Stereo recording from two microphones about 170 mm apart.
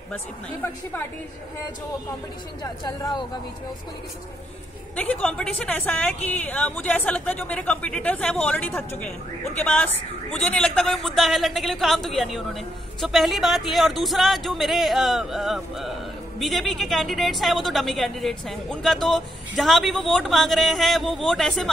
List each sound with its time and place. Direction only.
2.6 s speech: 25° left (ahead or behind)
4.9 s a man's voice: 10° left (ahead or behind)